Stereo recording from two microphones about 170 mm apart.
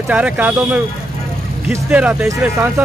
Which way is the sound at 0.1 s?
10° right (ahead or behind).